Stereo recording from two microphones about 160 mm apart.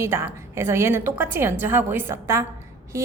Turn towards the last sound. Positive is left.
turn(degrees=-15)  # may be behind; listen again after turning